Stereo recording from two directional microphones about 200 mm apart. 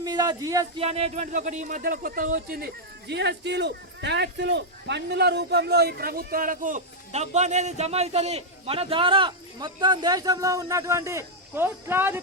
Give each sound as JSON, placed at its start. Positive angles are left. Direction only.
{"t": 0.0, "sound": "speech", "side_deg": -20}
{"t": 0.9, "sound": "a man's voice", "side_deg": -30}
{"t": 3.1, "sound": "a man's voice", "side_deg": -60}